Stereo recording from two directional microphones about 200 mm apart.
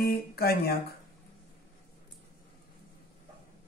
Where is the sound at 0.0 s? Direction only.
50° left (ahead or behind).